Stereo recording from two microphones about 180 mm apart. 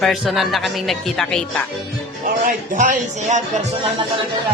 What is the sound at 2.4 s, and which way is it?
Speech, 50° right (ahead or behind).